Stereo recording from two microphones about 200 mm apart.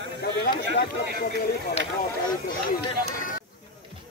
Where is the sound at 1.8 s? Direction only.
45° left (ahead or behind).